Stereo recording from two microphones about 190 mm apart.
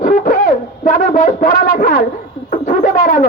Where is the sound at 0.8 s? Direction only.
40° left (ahead or behind).